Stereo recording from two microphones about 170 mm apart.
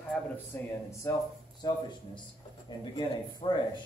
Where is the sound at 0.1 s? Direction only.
5° left (ahead or behind).